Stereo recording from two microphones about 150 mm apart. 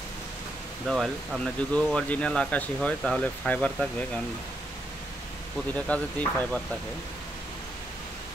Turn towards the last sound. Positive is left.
turn(degrees=10)  # may be behind; listen again after turning